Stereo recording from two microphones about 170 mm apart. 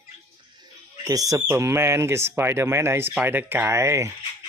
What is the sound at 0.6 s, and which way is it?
Music, 20° right (ahead or behind).